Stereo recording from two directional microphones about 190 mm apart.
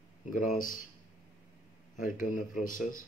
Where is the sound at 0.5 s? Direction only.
45° left (ahead or behind).